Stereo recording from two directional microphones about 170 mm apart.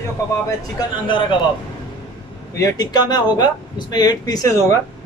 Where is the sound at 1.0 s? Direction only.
30° left (ahead or behind).